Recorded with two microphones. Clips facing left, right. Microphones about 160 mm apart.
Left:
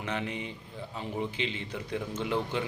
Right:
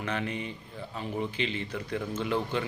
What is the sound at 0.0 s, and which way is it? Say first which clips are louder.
Speech: right 1 dB; 20° left (ahead or behind).